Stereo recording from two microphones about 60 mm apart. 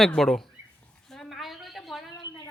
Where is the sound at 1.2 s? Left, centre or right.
Centre.